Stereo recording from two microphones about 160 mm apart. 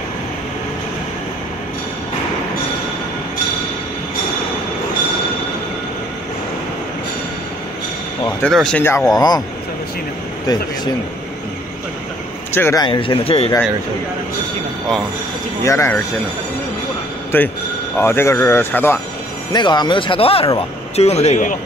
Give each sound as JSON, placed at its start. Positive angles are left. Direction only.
{"t": 8.6, "sound": "speech", "side_deg": 10}
{"t": 9.1, "sound": "a man's voice", "side_deg": 25}
{"t": 12.5, "sound": "speech", "side_deg": 15}
{"t": 12.8, "sound": "speech", "side_deg": 30}
{"t": 15.6, "sound": "speech", "side_deg": 15}
{"t": 17.3, "sound": "speech", "side_deg": 10}
{"t": 19.5, "sound": "speech", "side_deg": 30}